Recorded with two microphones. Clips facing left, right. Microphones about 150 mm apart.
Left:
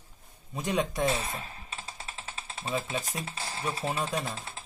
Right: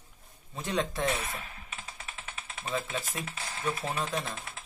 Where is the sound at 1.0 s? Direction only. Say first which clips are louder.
Left 2 dB; 35° left (ahead or behind).